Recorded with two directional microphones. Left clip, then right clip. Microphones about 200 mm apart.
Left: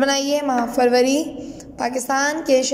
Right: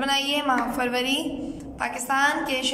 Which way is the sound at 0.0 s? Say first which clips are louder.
Left 4 dB; 35° left (ahead or behind).